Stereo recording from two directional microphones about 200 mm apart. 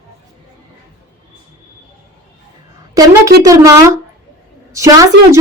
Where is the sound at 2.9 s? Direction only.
20° right (ahead or behind).